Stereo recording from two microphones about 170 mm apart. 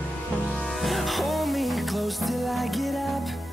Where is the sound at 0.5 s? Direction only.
Centre (ahead or behind).